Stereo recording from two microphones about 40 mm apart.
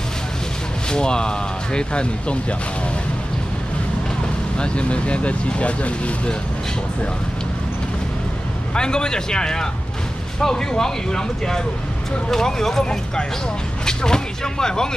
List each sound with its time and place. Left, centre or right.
0.8 s speech: left
4.6 s speech: left
8.7 s speech: centre
13.8 s speech: centre